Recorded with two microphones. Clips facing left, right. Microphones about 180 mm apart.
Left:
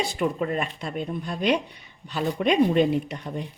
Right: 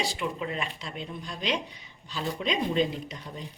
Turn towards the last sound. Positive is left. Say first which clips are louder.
# left 10 dB
turn(degrees=65)  # may be behind; listen again after turning